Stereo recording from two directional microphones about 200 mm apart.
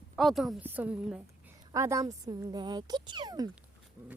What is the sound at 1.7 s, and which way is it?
Speech, 15° right (ahead or behind).